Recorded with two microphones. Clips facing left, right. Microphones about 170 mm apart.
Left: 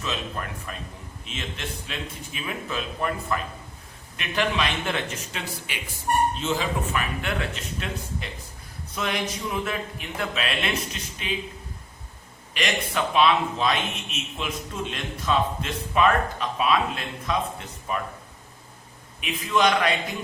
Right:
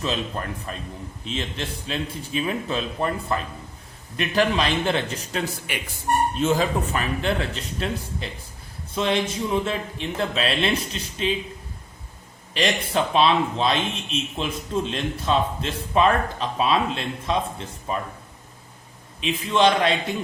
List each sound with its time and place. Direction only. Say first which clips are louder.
0.0 s a man's voice: right 4 dB; 35° right (ahead or behind)
12.5 s a man's voice: right 4 dB; 30° right (ahead or behind)
19.2 s a man's voice: right 3 dB; 30° right (ahead or behind)